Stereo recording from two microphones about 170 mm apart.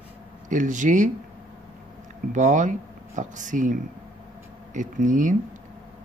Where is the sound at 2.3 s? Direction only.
45° right (ahead or behind).